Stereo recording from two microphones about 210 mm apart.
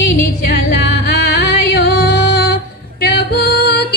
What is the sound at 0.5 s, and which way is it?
Music, 50° left (ahead or behind).